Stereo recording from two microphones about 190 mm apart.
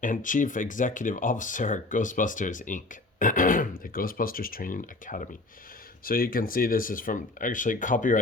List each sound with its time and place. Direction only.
0.0 s speech: 45° left (ahead or behind)